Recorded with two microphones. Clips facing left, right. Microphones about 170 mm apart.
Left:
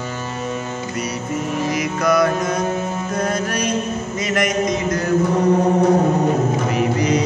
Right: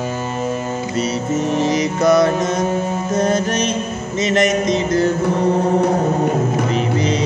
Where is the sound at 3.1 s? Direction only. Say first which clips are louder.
Right 5 dB; 25° right (ahead or behind).